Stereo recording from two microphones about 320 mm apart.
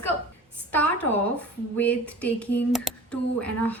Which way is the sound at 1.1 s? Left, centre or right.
Centre.